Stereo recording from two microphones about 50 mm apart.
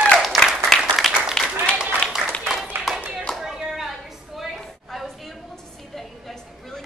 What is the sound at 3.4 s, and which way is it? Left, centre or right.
Clapping, centre.